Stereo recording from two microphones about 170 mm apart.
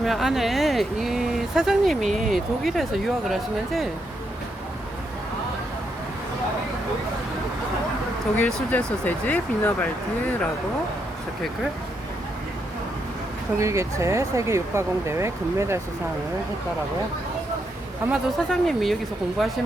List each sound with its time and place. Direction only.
0.0 s speech: centre (ahead or behind)
8.4 s speech: 10° left (ahead or behind)
13.6 s speech: 15° right (ahead or behind)
18.1 s speech: centre (ahead or behind)